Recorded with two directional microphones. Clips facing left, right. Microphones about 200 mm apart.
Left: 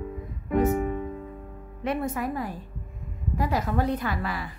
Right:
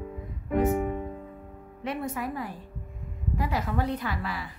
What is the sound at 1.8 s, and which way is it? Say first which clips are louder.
Speech: left 4 dB; 45° left (ahead or behind).